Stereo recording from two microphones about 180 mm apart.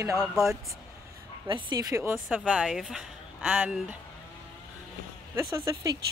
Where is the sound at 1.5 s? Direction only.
20° right (ahead or behind).